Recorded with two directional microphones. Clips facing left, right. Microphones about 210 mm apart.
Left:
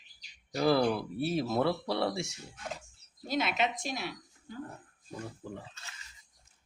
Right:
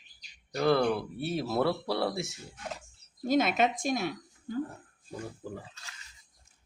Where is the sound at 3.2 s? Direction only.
50° right (ahead or behind).